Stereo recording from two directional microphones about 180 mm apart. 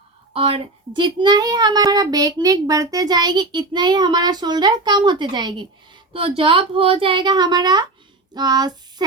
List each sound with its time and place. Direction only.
0.3 s speech: 30° right (ahead or behind)